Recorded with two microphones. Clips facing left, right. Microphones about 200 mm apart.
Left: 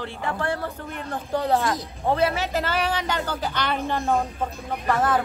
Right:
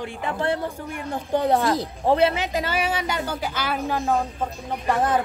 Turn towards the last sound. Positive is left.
turn(degrees=-20)  # may be behind; listen again after turning